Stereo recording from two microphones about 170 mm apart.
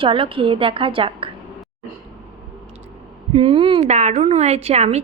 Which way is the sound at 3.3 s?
30° right (ahead or behind).